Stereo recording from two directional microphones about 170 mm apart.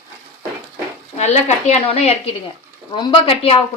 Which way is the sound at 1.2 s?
40° left (ahead or behind).